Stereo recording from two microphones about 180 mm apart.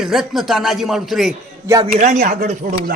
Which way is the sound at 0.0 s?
Centre (ahead or behind).